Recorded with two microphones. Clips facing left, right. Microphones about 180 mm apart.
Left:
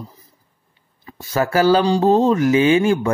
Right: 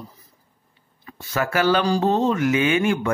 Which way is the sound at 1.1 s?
35° left (ahead or behind).